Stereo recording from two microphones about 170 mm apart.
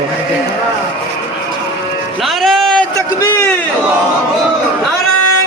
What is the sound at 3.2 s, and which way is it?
Speech, 15° left (ahead or behind).